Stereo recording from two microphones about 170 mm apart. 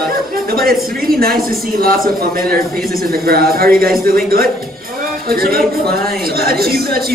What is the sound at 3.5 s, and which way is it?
Speech, 60° right (ahead or behind).